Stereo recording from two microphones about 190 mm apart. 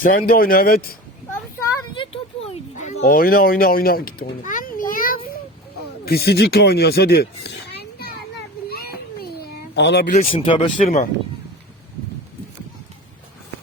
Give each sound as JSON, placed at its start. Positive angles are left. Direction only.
{"t": 0.0, "sound": "speech", "side_deg": 50}
{"t": 2.0, "sound": "a sound", "side_deg": 30}
{"t": 3.0, "sound": "a child's voice", "side_deg": 50}
{"t": 8.7, "sound": "a sound", "side_deg": 55}
{"t": 10.1, "sound": "speech", "side_deg": 45}
{"t": 10.3, "sound": "speech", "side_deg": 25}
{"t": 10.8, "sound": "speech", "side_deg": 40}